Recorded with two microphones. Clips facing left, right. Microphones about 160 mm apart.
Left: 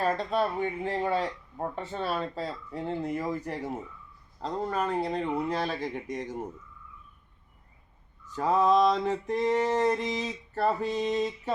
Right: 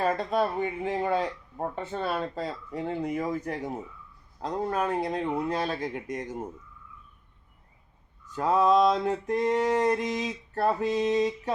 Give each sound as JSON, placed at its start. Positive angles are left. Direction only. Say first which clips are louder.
{"t": 0.0, "sound": "speech", "louder": "right 1 dB", "side_deg": -5}
{"t": 5.9, "sound": "speech", "louder": "even", "side_deg": -10}
{"t": 8.4, "sound": "speech", "louder": "right 1 dB", "side_deg": 0}